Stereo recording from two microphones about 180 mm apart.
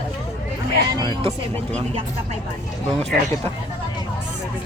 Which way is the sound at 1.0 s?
25° right (ahead or behind).